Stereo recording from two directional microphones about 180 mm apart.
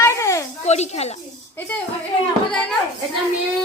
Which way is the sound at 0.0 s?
15° left (ahead or behind).